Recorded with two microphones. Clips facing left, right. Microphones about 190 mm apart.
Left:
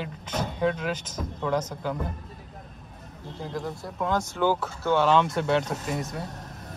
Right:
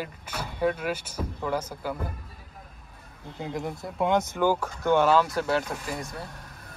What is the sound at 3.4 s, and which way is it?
Speech, 20° right (ahead or behind).